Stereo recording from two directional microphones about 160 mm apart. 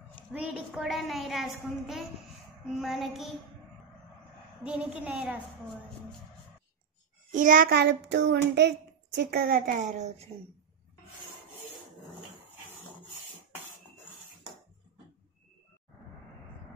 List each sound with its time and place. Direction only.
0.3 s a woman's voice: 5° right (ahead or behind)
4.6 s a woman's voice: 5° right (ahead or behind)
7.3 s child singing: 55° right (ahead or behind); by 8.7 s 90° right
9.3 s a woman's voice: 70° right (ahead or behind); by 10.2 s 45° right (ahead or behind)